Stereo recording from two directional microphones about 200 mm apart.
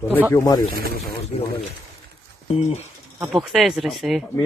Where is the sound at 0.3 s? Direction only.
15° left (ahead or behind).